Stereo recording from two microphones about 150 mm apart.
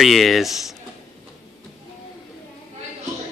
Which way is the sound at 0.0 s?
Centre (ahead or behind).